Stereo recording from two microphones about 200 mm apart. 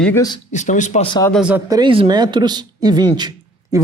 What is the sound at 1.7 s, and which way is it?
Speech, 20° right (ahead or behind).